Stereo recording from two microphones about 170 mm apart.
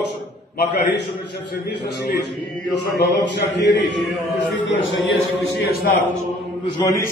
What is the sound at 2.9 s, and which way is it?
A man's voice, 90° left.